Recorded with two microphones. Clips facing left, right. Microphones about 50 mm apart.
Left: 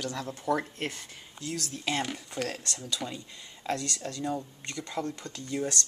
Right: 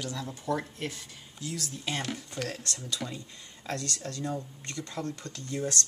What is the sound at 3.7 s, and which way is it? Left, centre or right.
Speech, left.